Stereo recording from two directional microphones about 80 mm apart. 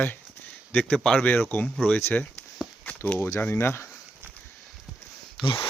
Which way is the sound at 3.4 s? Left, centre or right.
Left.